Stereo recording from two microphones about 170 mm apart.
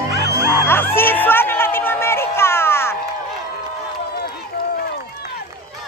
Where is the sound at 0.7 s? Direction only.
15° left (ahead or behind).